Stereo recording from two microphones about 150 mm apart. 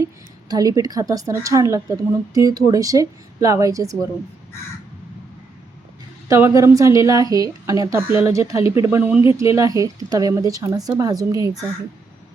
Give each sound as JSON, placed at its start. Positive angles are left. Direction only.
{"t": 0.0, "sound": "a woman's voice", "side_deg": -25}
{"t": 6.2, "sound": "a woman's voice", "side_deg": -20}